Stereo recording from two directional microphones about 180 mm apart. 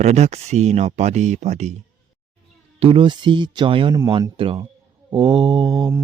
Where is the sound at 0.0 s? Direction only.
40° right (ahead or behind).